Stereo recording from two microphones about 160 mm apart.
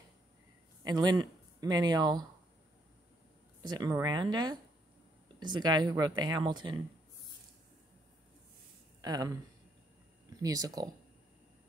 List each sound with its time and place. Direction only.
0.8 s speech: 25° right (ahead or behind)
3.6 s speech: 25° right (ahead or behind)
9.0 s speech: 25° right (ahead or behind)
10.4 s speech: 25° right (ahead or behind)